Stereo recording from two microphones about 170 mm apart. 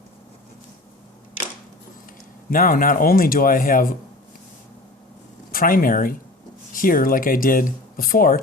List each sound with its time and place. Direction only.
2.5 s speech: 55° left (ahead or behind)
5.5 s speech: 55° left (ahead or behind)